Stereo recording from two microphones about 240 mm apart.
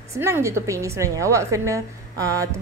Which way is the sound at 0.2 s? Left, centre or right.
Centre.